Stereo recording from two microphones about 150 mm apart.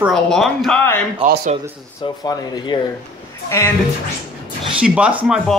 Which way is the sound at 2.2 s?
25° left (ahead or behind).